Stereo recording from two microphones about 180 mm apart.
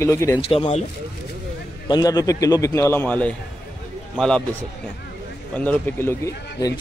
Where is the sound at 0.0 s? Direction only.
15° left (ahead or behind).